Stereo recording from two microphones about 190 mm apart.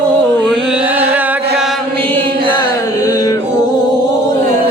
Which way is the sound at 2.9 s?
20° left (ahead or behind).